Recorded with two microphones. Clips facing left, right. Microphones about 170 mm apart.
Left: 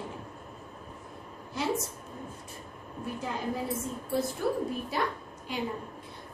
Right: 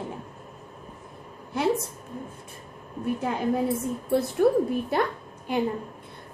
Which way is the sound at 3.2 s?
60° right (ahead or behind).